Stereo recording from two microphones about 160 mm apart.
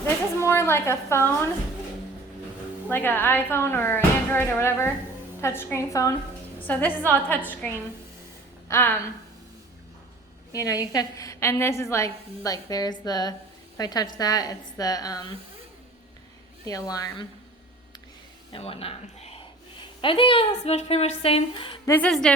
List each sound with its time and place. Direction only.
0.4 s speech: 15° left (ahead or behind)
2.9 s speech: 15° left (ahead or behind)
8.6 s a woman's voice: 15° left (ahead or behind)
10.5 s a woman's voice: 20° left (ahead or behind)
16.6 s a woman's voice: 25° left (ahead or behind)
18.5 s speech: 35° left (ahead or behind)
21.8 s speech: 15° left (ahead or behind)